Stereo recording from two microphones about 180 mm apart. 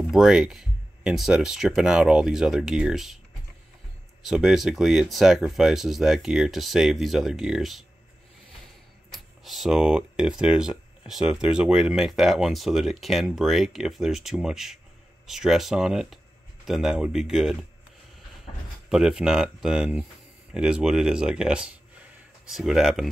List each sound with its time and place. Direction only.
0.1 s speech: 5° right (ahead or behind)
4.2 s speech: centre (ahead or behind)
9.1 s speech: centre (ahead or behind)
18.9 s speech: 5° right (ahead or behind)